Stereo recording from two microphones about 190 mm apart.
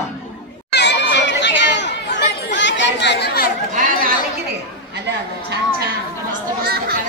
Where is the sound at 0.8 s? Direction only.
65° left (ahead or behind).